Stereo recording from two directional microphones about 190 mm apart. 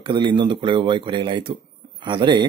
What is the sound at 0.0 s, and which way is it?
Speech, 25° right (ahead or behind).